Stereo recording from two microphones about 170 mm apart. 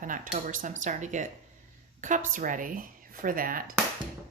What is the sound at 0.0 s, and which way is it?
A woman's voice, 50° right (ahead or behind).